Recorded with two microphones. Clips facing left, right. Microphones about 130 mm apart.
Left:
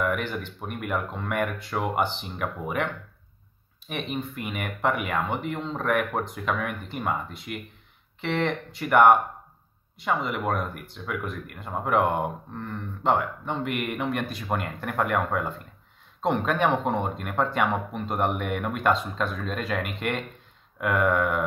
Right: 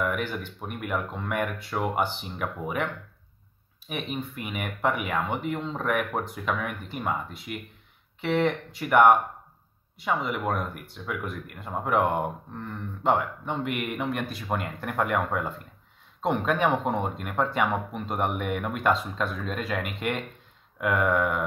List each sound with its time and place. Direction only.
0.0 s speech: 5° right (ahead or behind)